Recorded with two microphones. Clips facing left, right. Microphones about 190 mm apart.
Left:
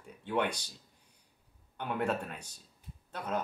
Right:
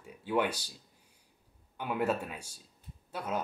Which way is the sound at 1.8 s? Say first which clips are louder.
Right 2 dB; 5° right (ahead or behind).